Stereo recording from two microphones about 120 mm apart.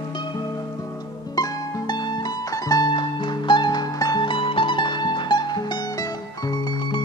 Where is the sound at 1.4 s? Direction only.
30° left (ahead or behind).